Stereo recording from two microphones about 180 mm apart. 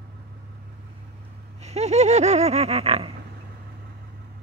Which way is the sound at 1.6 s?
35° right (ahead or behind).